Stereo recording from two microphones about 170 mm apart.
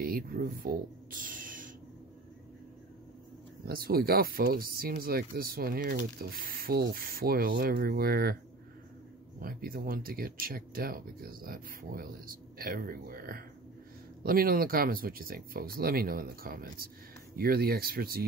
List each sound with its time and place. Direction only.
0.0 s speech: 60° right (ahead or behind)
3.6 s speech: 60° right (ahead or behind)
9.4 s speech: 60° right (ahead or behind)